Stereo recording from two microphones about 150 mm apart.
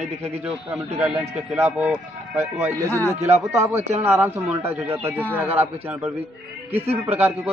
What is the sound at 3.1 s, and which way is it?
Speech, 45° right (ahead or behind).